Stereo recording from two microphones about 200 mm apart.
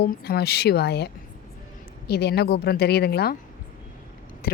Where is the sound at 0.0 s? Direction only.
50° left (ahead or behind).